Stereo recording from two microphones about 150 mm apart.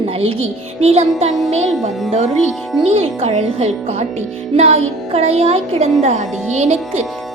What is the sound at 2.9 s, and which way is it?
Speech, 40° right (ahead or behind).